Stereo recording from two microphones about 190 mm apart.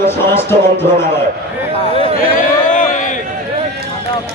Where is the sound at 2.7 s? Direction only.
40° left (ahead or behind).